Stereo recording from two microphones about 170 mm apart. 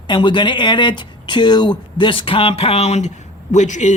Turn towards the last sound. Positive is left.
turn(degrees=45)  # may be behind; listen again after turning